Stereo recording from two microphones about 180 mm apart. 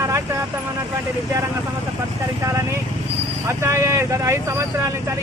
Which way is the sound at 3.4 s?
15° right (ahead or behind).